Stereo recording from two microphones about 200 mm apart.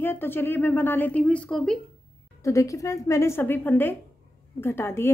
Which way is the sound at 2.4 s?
15° left (ahead or behind).